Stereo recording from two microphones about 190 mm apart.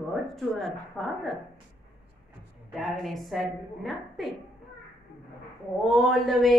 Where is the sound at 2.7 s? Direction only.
Centre (ahead or behind).